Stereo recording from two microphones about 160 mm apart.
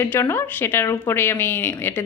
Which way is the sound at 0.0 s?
15° left (ahead or behind).